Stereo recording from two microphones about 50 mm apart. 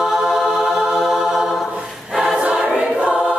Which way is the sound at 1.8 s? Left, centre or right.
Centre.